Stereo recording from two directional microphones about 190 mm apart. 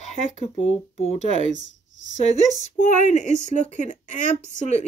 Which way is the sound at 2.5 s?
40° left (ahead or behind).